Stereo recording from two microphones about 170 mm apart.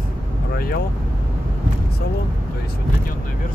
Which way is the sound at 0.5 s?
60° left (ahead or behind).